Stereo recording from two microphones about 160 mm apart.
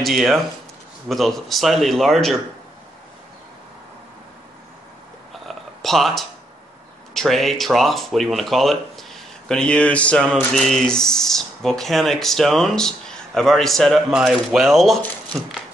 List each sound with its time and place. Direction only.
0.0 s speech: centre (ahead or behind)
5.3 s a sound: centre (ahead or behind)
7.2 s speech: centre (ahead or behind)